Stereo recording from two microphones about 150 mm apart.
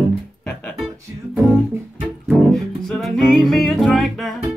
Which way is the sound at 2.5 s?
Centre (ahead or behind).